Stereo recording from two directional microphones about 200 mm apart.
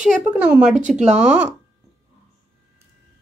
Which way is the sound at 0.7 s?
40° right (ahead or behind).